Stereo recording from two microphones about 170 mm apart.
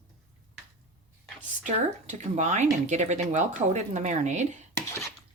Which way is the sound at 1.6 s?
45° right (ahead or behind).